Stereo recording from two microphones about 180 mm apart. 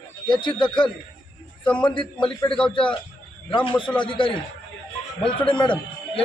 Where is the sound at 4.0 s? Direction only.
25° left (ahead or behind).